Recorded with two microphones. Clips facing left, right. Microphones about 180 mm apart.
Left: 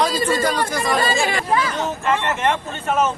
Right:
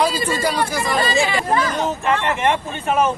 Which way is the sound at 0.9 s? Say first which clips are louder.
Right 2 dB; 45° left (ahead or behind).